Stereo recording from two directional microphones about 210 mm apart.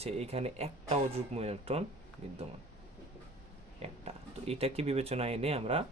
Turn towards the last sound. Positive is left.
turn(degrees=-30)  # may be behind; listen again after turning